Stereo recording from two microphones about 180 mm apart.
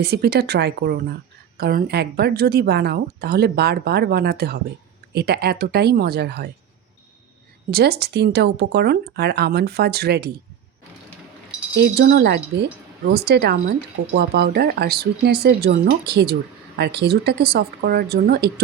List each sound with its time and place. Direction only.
0.0 s speech: 60° right (ahead or behind)
7.7 s speech: 60° right (ahead or behind)
11.8 s speech: 70° right (ahead or behind)